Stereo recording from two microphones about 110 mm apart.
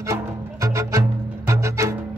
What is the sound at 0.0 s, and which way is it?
Music, 30° right (ahead or behind).